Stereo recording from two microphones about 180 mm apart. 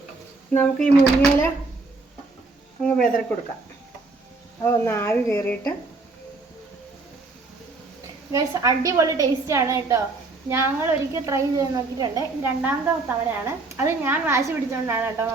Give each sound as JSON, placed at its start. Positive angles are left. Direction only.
{"t": 0.5, "sound": "speech", "side_deg": 10}
{"t": 2.8, "sound": "speech", "side_deg": 5}
{"t": 4.6, "sound": "speech", "side_deg": 15}
{"t": 8.3, "sound": "speech", "side_deg": -20}
{"t": 12.4, "sound": "speech", "side_deg": -10}